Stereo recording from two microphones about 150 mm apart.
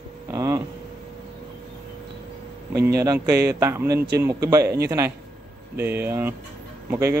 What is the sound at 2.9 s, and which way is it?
Speech, 20° right (ahead or behind).